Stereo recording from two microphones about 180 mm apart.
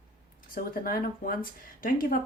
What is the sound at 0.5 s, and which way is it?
Speech, 50° left (ahead or behind).